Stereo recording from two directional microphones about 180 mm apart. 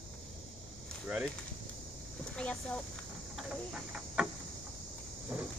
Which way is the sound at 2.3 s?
5° left (ahead or behind).